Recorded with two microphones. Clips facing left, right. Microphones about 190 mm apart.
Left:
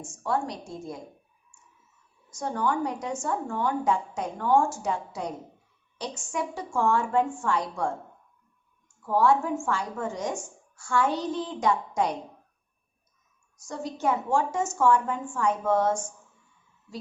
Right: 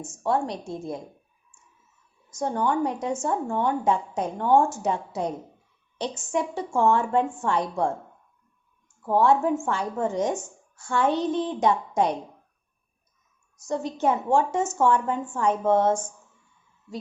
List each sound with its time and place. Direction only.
0.1 s a woman's voice: 25° right (ahead or behind)
2.3 s a woman's voice: 20° right (ahead or behind)
9.0 s a woman's voice: 20° right (ahead or behind)
13.7 s a woman's voice: 25° right (ahead or behind)